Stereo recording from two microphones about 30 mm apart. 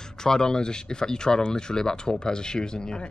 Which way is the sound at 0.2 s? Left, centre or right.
Left.